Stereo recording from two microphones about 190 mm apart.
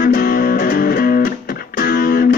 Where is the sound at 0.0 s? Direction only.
50° left (ahead or behind).